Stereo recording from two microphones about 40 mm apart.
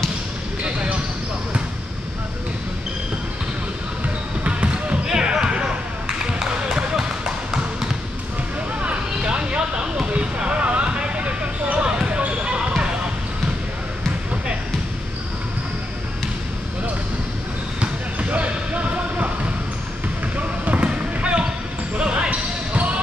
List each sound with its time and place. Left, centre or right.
0.7 s basketball bounce: right
4.5 s basketball bounce: right
5.0 s basketball bounce: centre
8.8 s a sound: right
10.1 s a sound: right
12.2 s basketball bounce: right
18.3 s basketball bounce: right
20.3 s a sound: right
20.8 s basketball bounce: right